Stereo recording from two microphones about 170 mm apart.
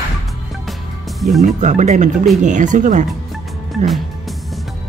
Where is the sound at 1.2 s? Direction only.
Centre (ahead or behind).